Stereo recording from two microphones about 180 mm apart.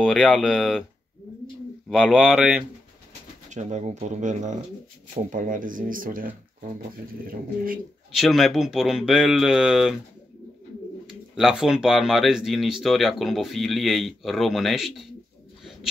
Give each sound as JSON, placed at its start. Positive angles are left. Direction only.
{"t": 0.0, "sound": "speech", "side_deg": 0}
{"t": 1.9, "sound": "speech", "side_deg": -5}
{"t": 3.4, "sound": "speech", "side_deg": -40}
{"t": 8.1, "sound": "speech", "side_deg": 0}
{"t": 11.1, "sound": "speech", "side_deg": -5}